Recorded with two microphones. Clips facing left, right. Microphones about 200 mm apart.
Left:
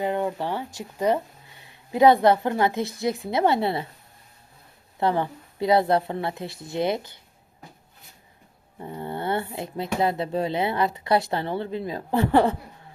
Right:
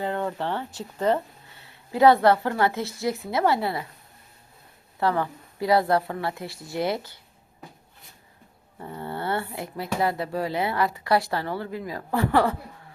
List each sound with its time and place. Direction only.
0.0 s speech: 15° left (ahead or behind)
4.9 s speech: 20° left (ahead or behind)
8.8 s speech: 20° left (ahead or behind)